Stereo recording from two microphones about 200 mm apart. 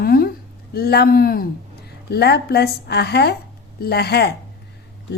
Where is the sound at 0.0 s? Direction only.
50° left (ahead or behind).